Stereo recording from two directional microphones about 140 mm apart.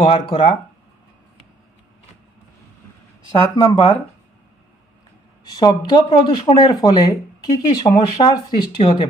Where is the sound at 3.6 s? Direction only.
25° left (ahead or behind).